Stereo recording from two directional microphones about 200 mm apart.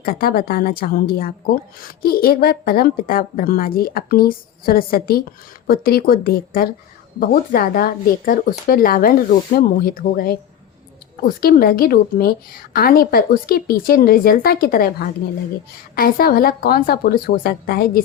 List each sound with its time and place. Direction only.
0.0 s a woman's voice: 45° left (ahead or behind)